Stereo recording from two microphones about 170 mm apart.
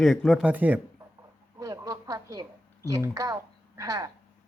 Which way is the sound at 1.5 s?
20° right (ahead or behind).